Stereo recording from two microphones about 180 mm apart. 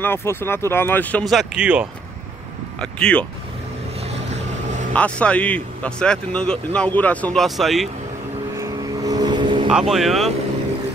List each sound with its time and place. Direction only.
0.0 s speech: 15° left (ahead or behind); by 1.9 s 5° right (ahead or behind)
2.8 s speech: 5° left (ahead or behind)
4.1 s boat: 40° right (ahead or behind)
4.9 s speech: 5° left (ahead or behind)
8.5 s vehicle: 20° right (ahead or behind)
9.7 s speech: centre (ahead or behind)